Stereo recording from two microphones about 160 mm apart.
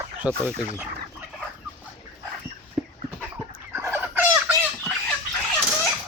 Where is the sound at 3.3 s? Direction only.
15° right (ahead or behind).